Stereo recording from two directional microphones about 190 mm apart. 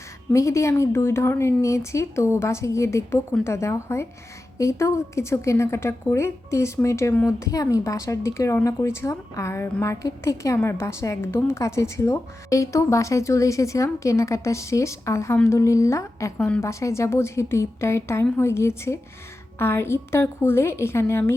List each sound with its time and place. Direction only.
0.3 s a woman's voice: 15° left (ahead or behind)